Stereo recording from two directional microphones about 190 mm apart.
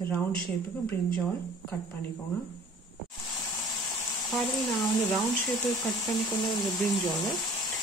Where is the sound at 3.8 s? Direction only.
20° left (ahead or behind).